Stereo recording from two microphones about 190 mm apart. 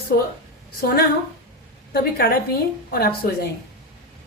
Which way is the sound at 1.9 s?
55° left (ahead or behind).